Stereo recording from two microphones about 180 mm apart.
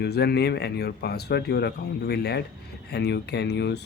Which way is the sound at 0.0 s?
65° left (ahead or behind).